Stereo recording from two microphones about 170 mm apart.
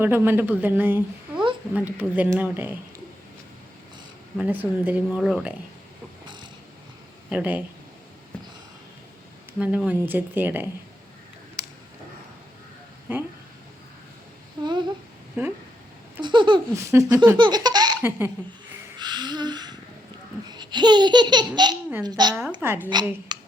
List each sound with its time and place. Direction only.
0.0 s a woman's voice: 10° right (ahead or behind)
4.4 s a woman's voice: 10° right (ahead or behind)
7.3 s a woman's voice: 10° right (ahead or behind)
9.6 s a woman's voice: 10° right (ahead or behind)
13.1 s a woman's voice: 10° right (ahead or behind)
14.6 s laughter: 25° right (ahead or behind)
15.4 s a woman's voice: 15° right (ahead or behind)
16.2 s laughter: 30° right (ahead or behind)
16.8 s speech: 20° right (ahead or behind)
18.9 s a sound: 25° right (ahead or behind)
20.5 s laughter: 25° right (ahead or behind)
22.6 s a woman's voice: 10° right (ahead or behind)
23.3 s a sound: 25° right (ahead or behind)